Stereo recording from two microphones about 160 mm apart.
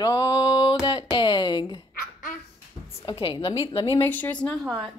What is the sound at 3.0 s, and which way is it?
A woman's voice, 35° left (ahead or behind).